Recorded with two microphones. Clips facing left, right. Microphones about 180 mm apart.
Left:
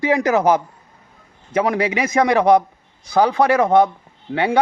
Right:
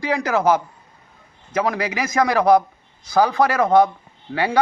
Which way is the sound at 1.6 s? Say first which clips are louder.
Left 4 dB; 25° left (ahead or behind).